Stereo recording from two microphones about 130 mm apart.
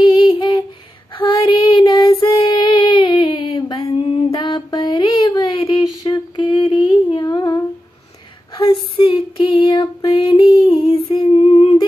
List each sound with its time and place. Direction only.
0.0 s humming: 40° left (ahead or behind)
1.1 s child singing: 40° left (ahead or behind)
3.8 s mantra: 50° left (ahead or behind)
5.2 s a sound: 35° left (ahead or behind)
8.5 s female singing: 40° left (ahead or behind)
10.9 s humming: 40° left (ahead or behind)